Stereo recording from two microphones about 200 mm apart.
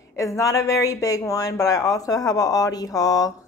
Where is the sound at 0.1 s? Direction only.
15° left (ahead or behind).